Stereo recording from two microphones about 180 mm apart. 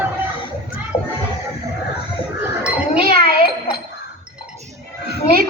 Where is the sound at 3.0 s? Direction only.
55° right (ahead or behind).